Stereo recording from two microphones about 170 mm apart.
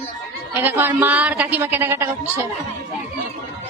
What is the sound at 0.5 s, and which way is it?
A woman's voice, 10° right (ahead or behind).